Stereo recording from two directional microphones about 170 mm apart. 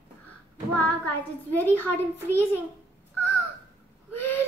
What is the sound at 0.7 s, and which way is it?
A child's voice, 10° left (ahead or behind).